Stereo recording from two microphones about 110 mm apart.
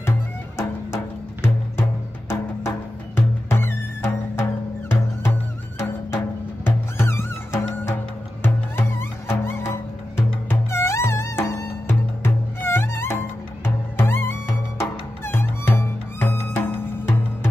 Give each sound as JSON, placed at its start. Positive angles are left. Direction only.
{"t": 0.6, "sound": "music", "side_deg": 20}